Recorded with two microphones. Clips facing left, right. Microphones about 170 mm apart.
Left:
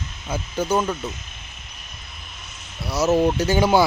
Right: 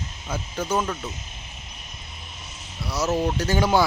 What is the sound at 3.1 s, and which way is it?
Speech, 25° left (ahead or behind).